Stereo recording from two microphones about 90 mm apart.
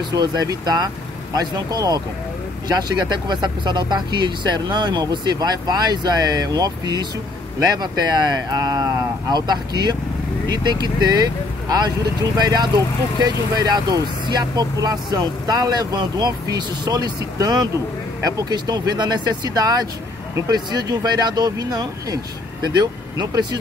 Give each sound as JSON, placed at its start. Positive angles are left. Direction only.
{"t": 0.1, "sound": "speech", "side_deg": -45}
{"t": 12.4, "sound": "speech", "side_deg": -50}